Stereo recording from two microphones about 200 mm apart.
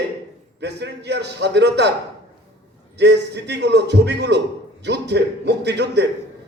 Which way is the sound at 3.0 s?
60° right (ahead or behind).